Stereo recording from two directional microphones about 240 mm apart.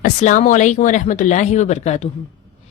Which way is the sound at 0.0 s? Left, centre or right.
Left.